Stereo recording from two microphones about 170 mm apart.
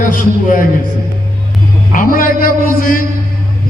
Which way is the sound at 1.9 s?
55° left (ahead or behind).